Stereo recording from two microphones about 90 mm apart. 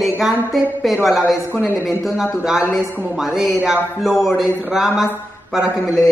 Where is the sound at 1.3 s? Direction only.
20° left (ahead or behind).